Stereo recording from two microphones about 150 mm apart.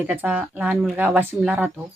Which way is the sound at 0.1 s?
10° right (ahead or behind).